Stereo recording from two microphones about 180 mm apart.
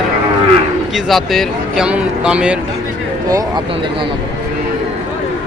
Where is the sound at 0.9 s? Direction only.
Centre (ahead or behind).